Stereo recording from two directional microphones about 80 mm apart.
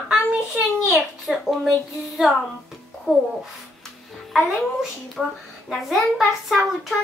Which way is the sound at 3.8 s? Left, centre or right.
Centre.